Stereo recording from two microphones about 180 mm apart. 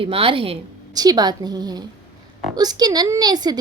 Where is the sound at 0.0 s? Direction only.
30° right (ahead or behind).